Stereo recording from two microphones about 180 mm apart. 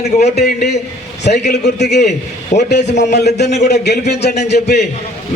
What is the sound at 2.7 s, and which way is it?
Speech, 70° left (ahead or behind).